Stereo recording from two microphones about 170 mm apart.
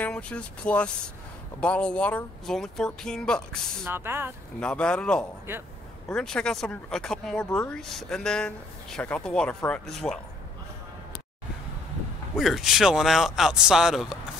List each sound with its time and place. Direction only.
0.0 s speech: 5° left (ahead or behind)
3.8 s speech: 15° right (ahead or behind)
4.6 s speech: 5° left (ahead or behind)
12.4 s speech: centre (ahead or behind)